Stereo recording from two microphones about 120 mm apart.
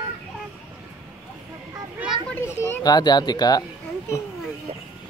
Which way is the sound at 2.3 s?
20° left (ahead or behind).